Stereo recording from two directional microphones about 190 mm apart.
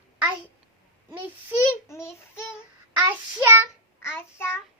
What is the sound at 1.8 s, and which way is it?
Speech, 15° left (ahead or behind).